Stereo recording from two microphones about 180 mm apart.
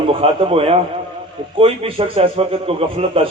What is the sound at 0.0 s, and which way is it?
A man's voice, 30° right (ahead or behind).